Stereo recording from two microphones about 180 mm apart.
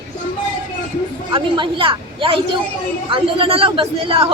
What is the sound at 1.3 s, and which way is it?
A woman's voice, 30° right (ahead or behind).